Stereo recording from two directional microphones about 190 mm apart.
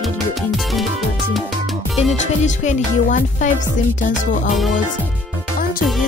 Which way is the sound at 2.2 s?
40° left (ahead or behind).